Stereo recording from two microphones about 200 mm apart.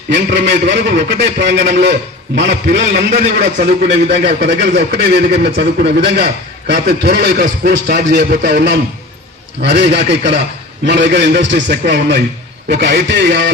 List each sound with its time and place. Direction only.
0.1 s a man's voice: 60° right (ahead or behind)
2.4 s a man's voice: 40° right (ahead or behind)
3.8 s a man's voice: 60° right (ahead or behind)
9.6 s a man's voice: 60° right (ahead or behind)